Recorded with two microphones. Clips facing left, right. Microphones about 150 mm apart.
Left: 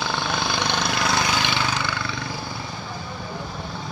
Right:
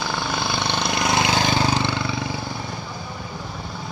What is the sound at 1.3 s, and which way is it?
Vehicle, 35° right (ahead or behind).